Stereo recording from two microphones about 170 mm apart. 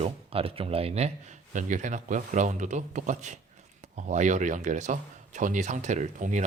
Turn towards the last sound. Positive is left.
turn(degrees=-45)  # may be behind; listen again after turning